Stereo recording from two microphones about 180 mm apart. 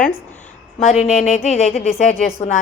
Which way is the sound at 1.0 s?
40° left (ahead or behind).